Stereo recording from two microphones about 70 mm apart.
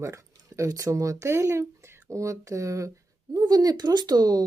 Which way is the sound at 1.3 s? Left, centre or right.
Right.